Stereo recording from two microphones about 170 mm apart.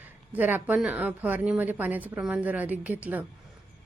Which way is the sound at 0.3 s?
10° right (ahead or behind).